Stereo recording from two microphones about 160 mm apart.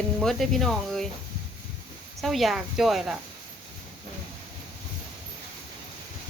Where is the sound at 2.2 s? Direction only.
Centre (ahead or behind).